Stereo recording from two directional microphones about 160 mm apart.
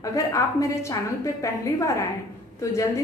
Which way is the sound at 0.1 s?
20° left (ahead or behind).